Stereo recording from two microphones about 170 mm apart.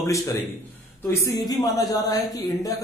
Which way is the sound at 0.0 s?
20° left (ahead or behind).